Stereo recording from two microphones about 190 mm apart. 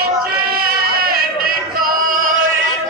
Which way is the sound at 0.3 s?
50° right (ahead or behind).